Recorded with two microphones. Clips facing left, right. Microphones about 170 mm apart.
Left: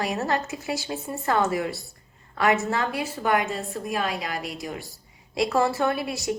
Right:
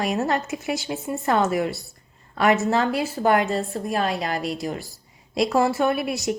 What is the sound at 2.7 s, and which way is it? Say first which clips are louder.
A woman's voice: right 5 dB; 25° right (ahead or behind).